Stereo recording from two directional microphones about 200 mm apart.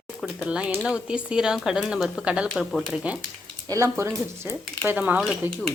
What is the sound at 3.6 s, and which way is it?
Speech, 15° right (ahead or behind).